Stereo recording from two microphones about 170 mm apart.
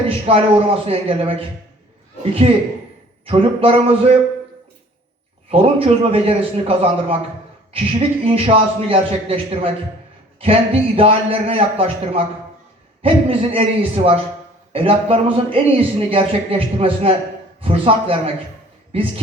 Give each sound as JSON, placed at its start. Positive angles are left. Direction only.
{"t": 0.3, "sound": "speech", "side_deg": -35}
{"t": 5.5, "sound": "speech", "side_deg": -35}